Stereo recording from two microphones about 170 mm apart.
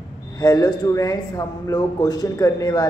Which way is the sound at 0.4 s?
20° left (ahead or behind).